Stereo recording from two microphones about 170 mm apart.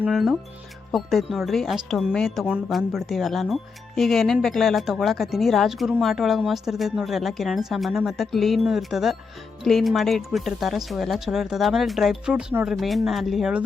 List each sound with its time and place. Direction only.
0.0 s speech: centre (ahead or behind)